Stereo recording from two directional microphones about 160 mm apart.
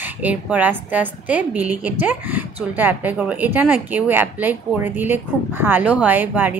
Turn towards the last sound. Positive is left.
turn(degrees=-10)  # may be behind; listen again after turning